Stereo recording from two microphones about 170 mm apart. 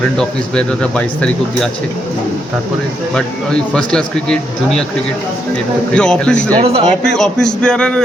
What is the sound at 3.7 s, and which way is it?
A man's voice, 5° left (ahead or behind).